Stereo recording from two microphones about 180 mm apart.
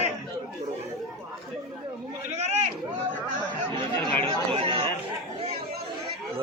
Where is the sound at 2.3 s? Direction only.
40° right (ahead or behind).